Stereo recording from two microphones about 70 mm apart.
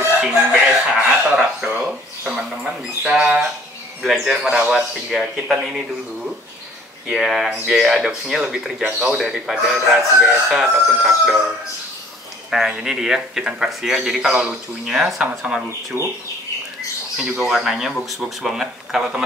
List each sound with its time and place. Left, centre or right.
0.5 s speech: centre
1.7 s a sound: centre
4.0 s speech: centre
7.1 s speech: centre
12.4 s speech: centre
15.9 s speech: right
17.2 s speech: centre